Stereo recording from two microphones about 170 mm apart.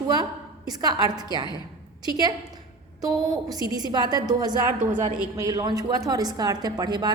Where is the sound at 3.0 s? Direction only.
20° right (ahead or behind).